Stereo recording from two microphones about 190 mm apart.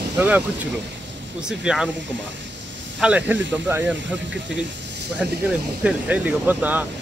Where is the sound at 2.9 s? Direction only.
5° right (ahead or behind).